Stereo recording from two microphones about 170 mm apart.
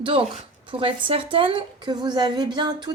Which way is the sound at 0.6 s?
30° right (ahead or behind).